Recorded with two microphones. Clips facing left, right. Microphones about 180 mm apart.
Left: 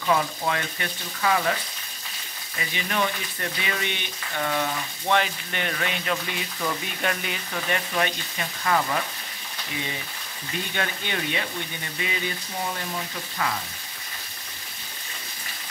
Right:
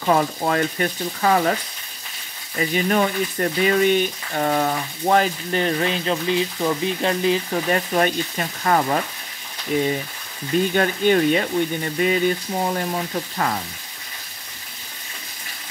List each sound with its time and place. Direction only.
0.0 s speech: 45° right (ahead or behind)
2.6 s speech: 45° right (ahead or behind)
10.7 s speech: 45° right (ahead or behind)